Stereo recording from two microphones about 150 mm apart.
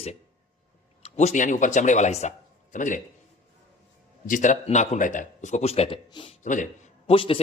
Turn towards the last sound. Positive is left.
turn(degrees=40)  # may be behind; listen again after turning